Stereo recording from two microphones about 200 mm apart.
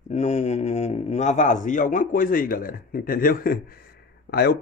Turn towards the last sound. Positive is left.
turn(degrees=50)  # may be behind; listen again after turning